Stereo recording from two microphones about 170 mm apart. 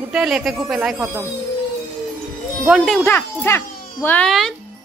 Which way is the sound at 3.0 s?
10° left (ahead or behind).